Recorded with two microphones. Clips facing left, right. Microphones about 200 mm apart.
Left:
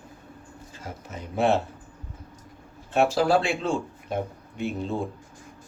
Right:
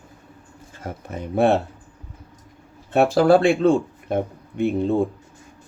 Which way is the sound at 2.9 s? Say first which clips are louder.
Right 6 dB; 55° right (ahead or behind).